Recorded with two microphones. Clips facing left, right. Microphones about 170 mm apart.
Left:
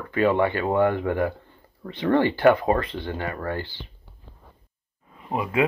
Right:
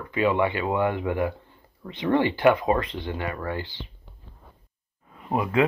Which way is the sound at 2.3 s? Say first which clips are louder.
Left 2 dB; 30° left (ahead or behind).